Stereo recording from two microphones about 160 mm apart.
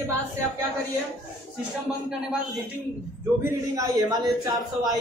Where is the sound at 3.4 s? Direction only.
20° right (ahead or behind).